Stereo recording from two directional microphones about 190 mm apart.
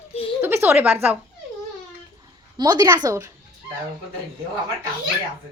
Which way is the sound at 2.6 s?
20° right (ahead or behind).